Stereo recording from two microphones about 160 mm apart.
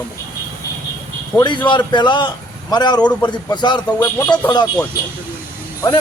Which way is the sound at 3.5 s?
30° left (ahead or behind).